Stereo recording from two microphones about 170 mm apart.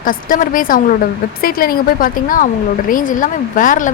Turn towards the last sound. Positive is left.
turn(degrees=50)  # may be behind; listen again after turning